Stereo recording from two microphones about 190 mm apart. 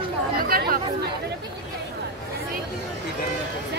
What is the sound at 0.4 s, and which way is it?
Chatter, 50° right (ahead or behind).